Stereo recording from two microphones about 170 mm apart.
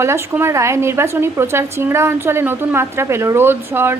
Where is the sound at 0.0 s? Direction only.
15° right (ahead or behind).